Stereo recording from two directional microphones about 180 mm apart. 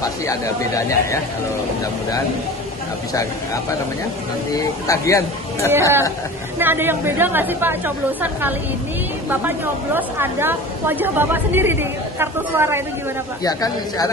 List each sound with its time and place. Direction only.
0.0 s speech: 20° left (ahead or behind)
3.1 s speech: 20° left (ahead or behind)
5.7 s speech: 15° right (ahead or behind)
9.9 s speech: 10° right (ahead or behind)
13.4 s speech: 20° left (ahead or behind)